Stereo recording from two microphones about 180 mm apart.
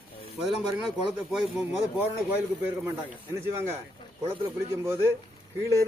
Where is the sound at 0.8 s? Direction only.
Centre (ahead or behind).